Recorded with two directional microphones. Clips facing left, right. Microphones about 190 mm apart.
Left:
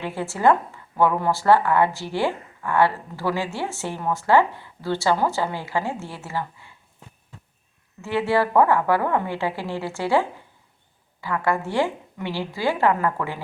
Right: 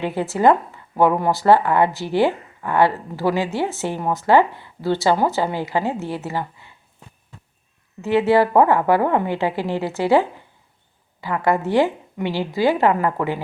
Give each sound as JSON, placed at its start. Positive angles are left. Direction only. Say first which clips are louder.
{"t": 0.0, "sound": "speech", "louder": "right 4 dB", "side_deg": -20}
{"t": 8.0, "sound": "speech", "louder": "right 6 dB", "side_deg": -20}